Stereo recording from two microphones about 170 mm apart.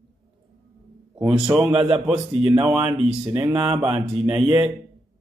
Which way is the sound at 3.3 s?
20° right (ahead or behind).